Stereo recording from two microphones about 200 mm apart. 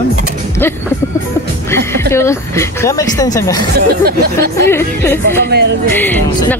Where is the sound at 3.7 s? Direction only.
50° right (ahead or behind).